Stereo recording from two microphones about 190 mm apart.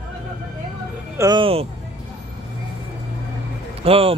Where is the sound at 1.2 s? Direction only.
25° right (ahead or behind).